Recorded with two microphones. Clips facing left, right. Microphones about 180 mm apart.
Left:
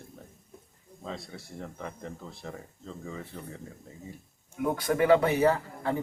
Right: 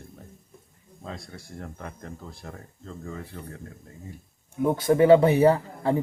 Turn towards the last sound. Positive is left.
turn(degrees=-30)  # may be behind; listen again after turning